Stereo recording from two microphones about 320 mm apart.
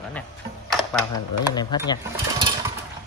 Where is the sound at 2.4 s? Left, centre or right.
Centre.